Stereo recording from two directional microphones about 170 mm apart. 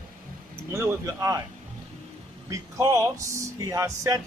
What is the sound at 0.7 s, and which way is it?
Speech, 15° right (ahead or behind).